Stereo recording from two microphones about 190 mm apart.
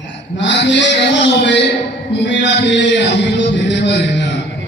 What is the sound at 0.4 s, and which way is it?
A man's voice, 65° left (ahead or behind).